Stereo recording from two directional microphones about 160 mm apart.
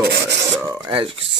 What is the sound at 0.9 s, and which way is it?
Speech, 35° right (ahead or behind).